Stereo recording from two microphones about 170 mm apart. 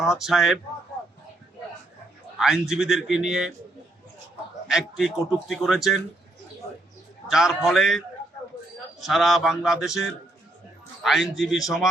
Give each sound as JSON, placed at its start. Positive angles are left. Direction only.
{"t": 0.0, "sound": "a man's voice", "side_deg": 0}
{"t": 2.4, "sound": "a man's voice", "side_deg": -5}
{"t": 4.7, "sound": "a man's voice", "side_deg": 0}
{"t": 7.3, "sound": "a man's voice", "side_deg": 0}
{"t": 11.0, "sound": "a man's voice", "side_deg": 0}